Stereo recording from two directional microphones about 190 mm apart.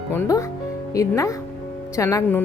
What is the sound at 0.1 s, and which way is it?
A woman's voice, 15° left (ahead or behind).